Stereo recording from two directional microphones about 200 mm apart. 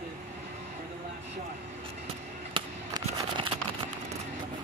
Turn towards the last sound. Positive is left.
turn(degrees=-20)  # may be behind; listen again after turning